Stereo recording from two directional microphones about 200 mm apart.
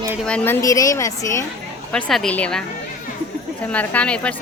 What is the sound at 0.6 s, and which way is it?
Speech, 15° left (ahead or behind).